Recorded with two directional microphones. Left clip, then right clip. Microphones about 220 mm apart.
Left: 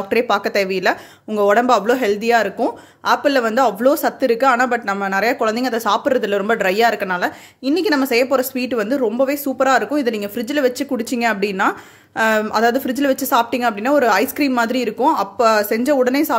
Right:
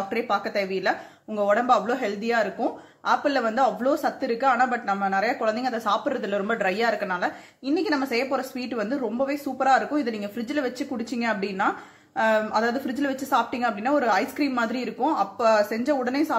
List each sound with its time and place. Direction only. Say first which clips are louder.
0.1 s speech: left 11 dB; 45° left (ahead or behind)